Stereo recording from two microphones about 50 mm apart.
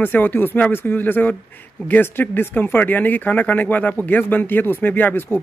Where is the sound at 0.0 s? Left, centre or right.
Left.